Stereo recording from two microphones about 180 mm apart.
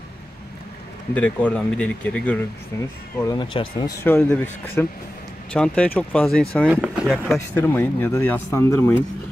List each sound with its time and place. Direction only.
1.1 s speech: 10° left (ahead or behind)
3.2 s speech: 20° left (ahead or behind)
4.0 s speech: 10° left (ahead or behind)
6.6 s speech: 5° right (ahead or behind)
7.3 s speech: 10° left (ahead or behind)